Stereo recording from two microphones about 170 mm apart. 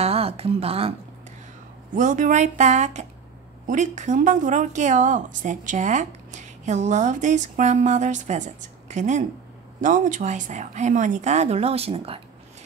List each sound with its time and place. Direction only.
0.0 s a woman's voice: 35° right (ahead or behind)
2.0 s a woman's voice: 50° right (ahead or behind)